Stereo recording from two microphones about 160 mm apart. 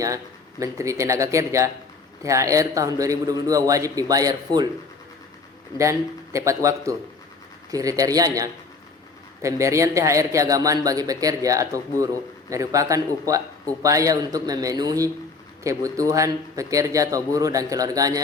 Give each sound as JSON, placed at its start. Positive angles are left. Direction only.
{"t": 0.6, "sound": "a man's voice", "side_deg": -20}
{"t": 5.7, "sound": "a man's voice", "side_deg": -20}